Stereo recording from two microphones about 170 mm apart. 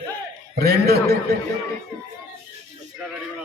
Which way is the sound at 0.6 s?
65° right (ahead or behind).